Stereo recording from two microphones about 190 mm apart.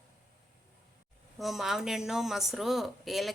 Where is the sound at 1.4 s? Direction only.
Centre (ahead or behind).